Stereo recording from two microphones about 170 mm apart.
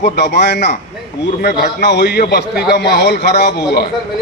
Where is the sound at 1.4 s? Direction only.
70° left (ahead or behind).